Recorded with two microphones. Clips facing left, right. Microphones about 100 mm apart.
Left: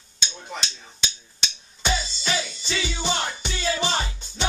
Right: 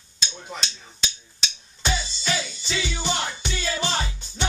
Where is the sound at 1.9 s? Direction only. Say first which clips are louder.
Left 1 dB; 15° left (ahead or behind).